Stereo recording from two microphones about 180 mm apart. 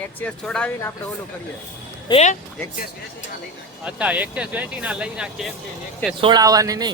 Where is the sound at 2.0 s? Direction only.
40° left (ahead or behind).